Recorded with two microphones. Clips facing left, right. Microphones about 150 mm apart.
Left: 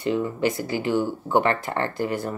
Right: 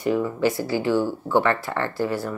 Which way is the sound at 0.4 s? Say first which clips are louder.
Right 2 dB; 20° left (ahead or behind).